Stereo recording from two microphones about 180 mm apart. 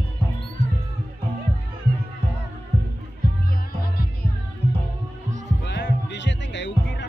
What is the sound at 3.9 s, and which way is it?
Music, 55° left (ahead or behind).